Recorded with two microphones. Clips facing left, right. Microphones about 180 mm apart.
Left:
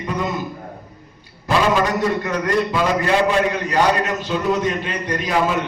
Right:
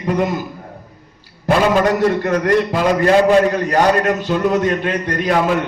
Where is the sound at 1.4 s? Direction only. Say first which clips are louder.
Right 4 dB; 60° right (ahead or behind).